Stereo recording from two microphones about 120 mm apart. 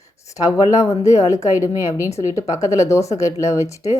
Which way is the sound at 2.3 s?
25° left (ahead or behind).